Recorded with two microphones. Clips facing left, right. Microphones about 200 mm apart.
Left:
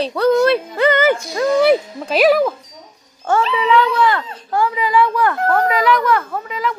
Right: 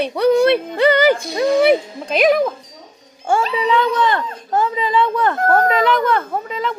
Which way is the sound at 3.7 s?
20° right (ahead or behind).